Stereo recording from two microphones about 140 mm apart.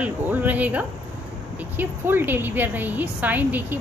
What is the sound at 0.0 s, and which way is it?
A woman's voice, 10° right (ahead or behind).